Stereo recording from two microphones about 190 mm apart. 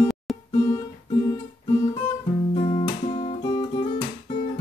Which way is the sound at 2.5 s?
30° left (ahead or behind).